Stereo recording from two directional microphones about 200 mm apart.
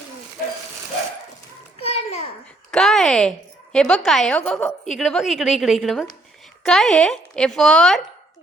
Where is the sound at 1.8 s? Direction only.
30° left (ahead or behind).